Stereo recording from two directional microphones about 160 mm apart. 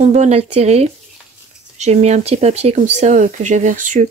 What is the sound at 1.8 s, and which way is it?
Speech, 45° right (ahead or behind).